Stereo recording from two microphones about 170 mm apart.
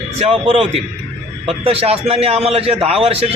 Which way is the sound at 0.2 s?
35° right (ahead or behind).